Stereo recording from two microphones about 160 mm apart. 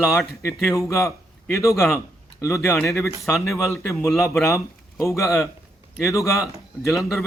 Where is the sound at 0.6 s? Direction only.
20° left (ahead or behind).